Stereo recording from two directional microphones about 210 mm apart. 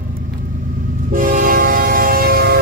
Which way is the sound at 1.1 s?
40° right (ahead or behind).